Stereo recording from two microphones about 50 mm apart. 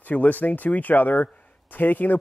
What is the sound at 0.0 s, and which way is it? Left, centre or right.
A man's voice, left.